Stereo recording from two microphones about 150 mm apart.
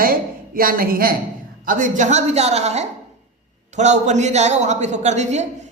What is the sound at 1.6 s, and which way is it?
A woman's voice, 65° right (ahead or behind).